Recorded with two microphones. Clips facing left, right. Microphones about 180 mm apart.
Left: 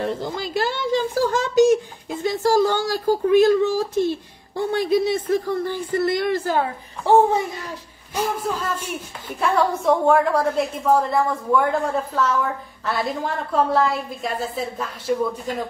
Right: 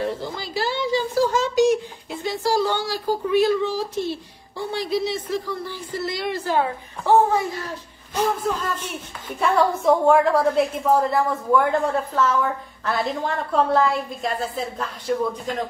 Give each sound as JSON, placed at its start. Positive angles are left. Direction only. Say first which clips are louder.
{"t": 0.6, "sound": "a woman's voice", "louder": "left 1 dB", "side_deg": 50}
{"t": 8.1, "sound": "a woman's voice", "louder": "right 1 dB", "side_deg": 10}